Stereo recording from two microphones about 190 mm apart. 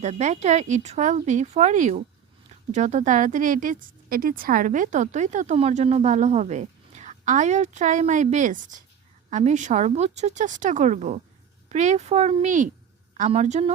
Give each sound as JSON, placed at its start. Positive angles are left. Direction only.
{"t": 0.0, "sound": "speech", "side_deg": -35}